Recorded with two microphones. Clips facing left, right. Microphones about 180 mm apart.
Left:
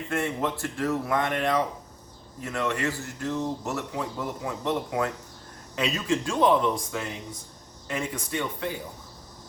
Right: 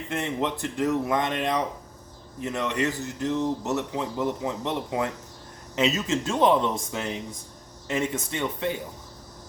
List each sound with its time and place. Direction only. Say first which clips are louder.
0.1 s speech: even; 20° right (ahead or behind)